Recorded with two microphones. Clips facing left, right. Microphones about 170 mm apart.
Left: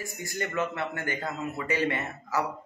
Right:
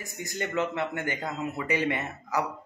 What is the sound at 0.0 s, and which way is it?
A man's voice, 20° right (ahead or behind).